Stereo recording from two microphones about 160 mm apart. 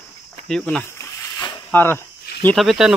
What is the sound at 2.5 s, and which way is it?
Speech, centre (ahead or behind).